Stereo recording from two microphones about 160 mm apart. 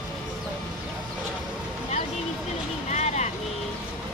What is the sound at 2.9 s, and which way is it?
Vehicle, 45° left (ahead or behind).